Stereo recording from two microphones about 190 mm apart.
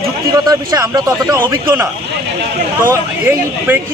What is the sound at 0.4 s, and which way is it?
A man's voice, 15° right (ahead or behind).